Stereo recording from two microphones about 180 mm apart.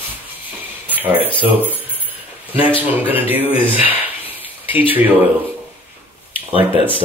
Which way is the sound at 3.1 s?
10° right (ahead or behind).